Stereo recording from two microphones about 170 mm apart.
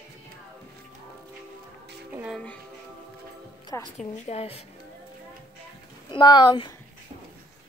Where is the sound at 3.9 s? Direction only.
45° left (ahead or behind).